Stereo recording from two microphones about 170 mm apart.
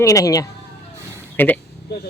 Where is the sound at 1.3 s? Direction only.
10° left (ahead or behind).